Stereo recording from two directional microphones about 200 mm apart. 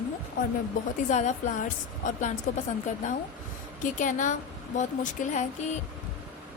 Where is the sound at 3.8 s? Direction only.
40° left (ahead or behind).